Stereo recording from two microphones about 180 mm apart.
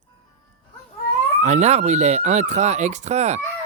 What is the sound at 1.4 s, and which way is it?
Speech, 40° right (ahead or behind).